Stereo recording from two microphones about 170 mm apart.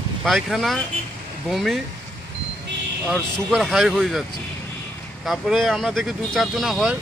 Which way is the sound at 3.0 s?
Centre (ahead or behind).